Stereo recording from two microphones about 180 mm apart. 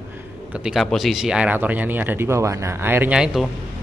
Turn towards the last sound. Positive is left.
turn(degrees=-5)  # may be behind; listen again after turning